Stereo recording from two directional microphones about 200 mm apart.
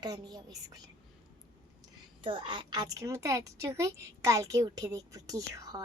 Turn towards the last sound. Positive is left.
turn(degrees=-20)  # may be behind; listen again after turning